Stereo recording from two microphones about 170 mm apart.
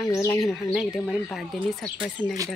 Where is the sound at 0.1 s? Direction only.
15° left (ahead or behind).